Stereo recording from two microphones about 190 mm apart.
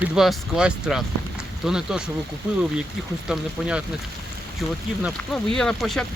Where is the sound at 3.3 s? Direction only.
5° right (ahead or behind).